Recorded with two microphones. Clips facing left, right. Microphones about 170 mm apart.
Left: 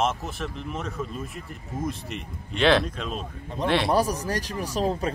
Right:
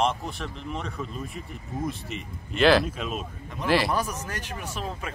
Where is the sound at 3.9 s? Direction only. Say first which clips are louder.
Left 6 dB; 35° left (ahead or behind).